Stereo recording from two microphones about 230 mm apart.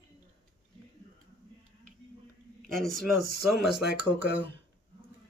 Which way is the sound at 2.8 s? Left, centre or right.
Right.